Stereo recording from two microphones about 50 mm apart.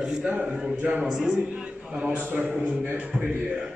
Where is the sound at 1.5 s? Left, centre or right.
Centre.